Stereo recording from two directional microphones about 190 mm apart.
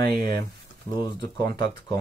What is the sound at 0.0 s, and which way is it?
Speech, 55° right (ahead or behind).